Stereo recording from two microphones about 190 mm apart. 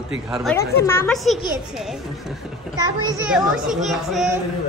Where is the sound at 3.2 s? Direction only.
5° right (ahead or behind).